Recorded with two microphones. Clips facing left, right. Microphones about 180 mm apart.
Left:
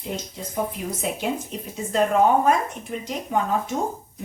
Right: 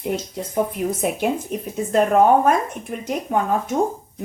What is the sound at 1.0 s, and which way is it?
Speech, 55° right (ahead or behind).